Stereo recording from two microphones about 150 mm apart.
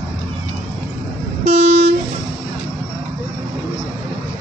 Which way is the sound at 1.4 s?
50° right (ahead or behind).